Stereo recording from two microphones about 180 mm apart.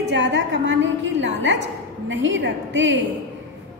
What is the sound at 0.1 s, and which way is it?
A woman's voice, 85° right.